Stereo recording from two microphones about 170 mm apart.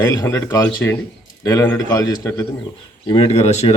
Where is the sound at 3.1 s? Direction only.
35° left (ahead or behind).